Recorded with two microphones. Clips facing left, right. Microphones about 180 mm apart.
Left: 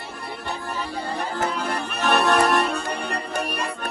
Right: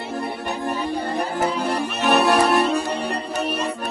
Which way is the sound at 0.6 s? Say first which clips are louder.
Right 9 dB; 15° right (ahead or behind).